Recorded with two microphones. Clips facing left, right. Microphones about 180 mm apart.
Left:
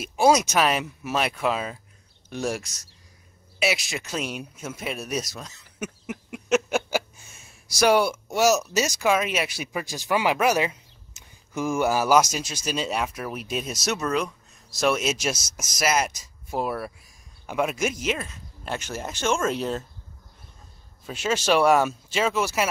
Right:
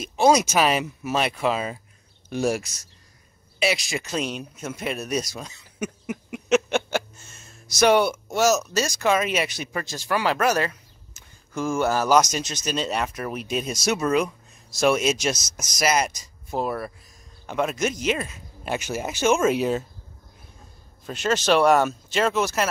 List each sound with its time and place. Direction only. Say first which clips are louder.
0.0 s speech: right 1 dB; 5° left (ahead or behind)
9.0 s speech: right 2 dB; 5° left (ahead or behind)
21.0 s speech: right 2 dB; 5° left (ahead or behind)